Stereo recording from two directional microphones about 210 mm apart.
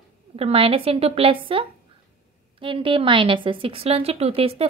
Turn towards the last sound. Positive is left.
turn(degrees=-25)  # may be behind; listen again after turning